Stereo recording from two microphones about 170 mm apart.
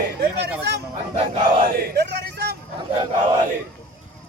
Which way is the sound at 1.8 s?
70° right (ahead or behind).